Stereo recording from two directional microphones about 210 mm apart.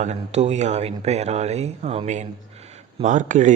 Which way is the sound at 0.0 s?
30° right (ahead or behind).